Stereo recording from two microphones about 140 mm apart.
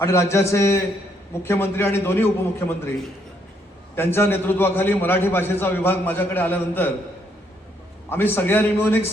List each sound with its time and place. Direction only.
0.0 s a man's voice: 20° left (ahead or behind)
3.9 s a man's voice: 15° left (ahead or behind)
8.1 s a man's voice: 15° left (ahead or behind)